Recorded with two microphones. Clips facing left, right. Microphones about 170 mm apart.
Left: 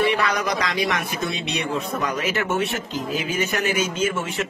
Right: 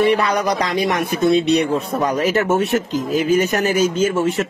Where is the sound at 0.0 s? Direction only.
35° right (ahead or behind).